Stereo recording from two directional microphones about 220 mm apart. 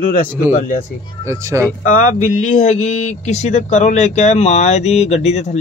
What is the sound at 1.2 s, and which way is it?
Speech, 10° right (ahead or behind).